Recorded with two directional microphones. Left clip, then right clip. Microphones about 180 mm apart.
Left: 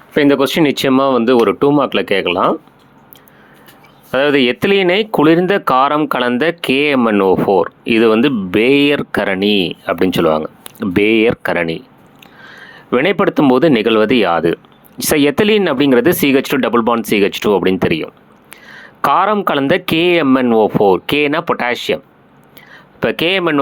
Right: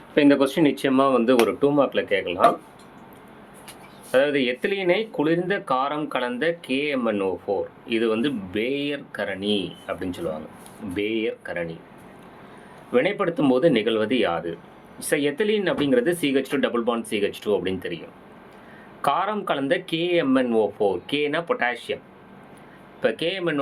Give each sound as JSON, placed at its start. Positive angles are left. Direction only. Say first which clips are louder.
{"t": 0.1, "sound": "speech", "louder": "left 6 dB", "side_deg": 35}
{"t": 4.1, "sound": "speech", "louder": "left 8 dB", "side_deg": 45}
{"t": 12.9, "sound": "speech", "louder": "left 8 dB", "side_deg": 45}